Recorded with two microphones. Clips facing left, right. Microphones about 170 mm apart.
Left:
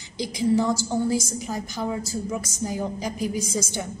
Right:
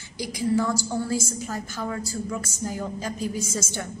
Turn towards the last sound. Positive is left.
turn(degrees=15)  # may be behind; listen again after turning